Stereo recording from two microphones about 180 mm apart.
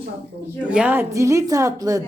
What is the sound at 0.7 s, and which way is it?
A woman's voice, 10° right (ahead or behind).